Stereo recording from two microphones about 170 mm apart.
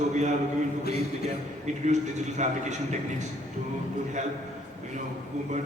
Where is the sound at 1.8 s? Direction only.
45° right (ahead or behind).